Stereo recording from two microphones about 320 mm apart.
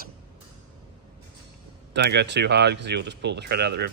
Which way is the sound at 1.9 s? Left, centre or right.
Right.